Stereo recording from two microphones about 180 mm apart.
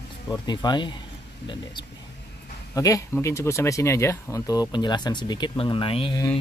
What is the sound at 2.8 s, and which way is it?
Speech, 20° left (ahead or behind).